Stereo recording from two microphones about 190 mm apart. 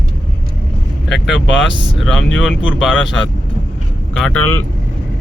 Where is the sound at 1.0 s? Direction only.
Centre (ahead or behind).